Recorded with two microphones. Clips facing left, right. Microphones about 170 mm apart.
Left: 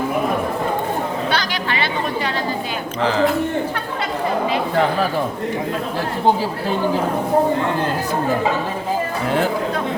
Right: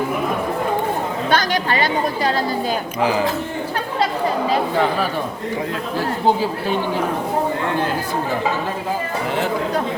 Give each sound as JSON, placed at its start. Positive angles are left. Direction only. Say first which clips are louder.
{"t": 1.3, "sound": "chatter", "louder": "right 3 dB", "side_deg": -45}
{"t": 3.0, "sound": "speech", "louder": "left 1 dB", "side_deg": -10}